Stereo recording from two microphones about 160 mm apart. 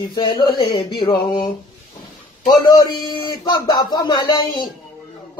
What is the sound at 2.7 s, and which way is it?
Speech, 25° left (ahead or behind).